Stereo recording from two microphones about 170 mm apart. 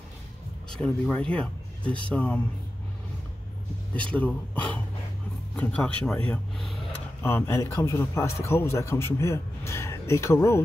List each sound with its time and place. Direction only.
0.7 s a man's voice: 5° left (ahead or behind)
3.9 s a man's voice: 10° left (ahead or behind)